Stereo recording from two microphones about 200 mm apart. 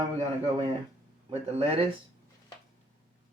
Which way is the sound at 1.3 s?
30° right (ahead or behind).